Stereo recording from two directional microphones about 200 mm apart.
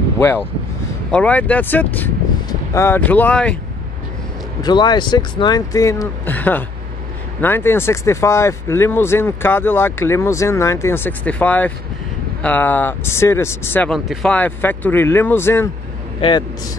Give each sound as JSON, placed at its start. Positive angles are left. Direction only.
{"t": 1.1, "sound": "speech", "side_deg": 5}
{"t": 4.6, "sound": "speech", "side_deg": 20}
{"t": 16.2, "sound": "speech", "side_deg": 20}